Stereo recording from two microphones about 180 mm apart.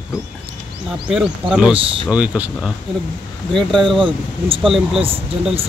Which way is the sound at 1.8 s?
30° right (ahead or behind).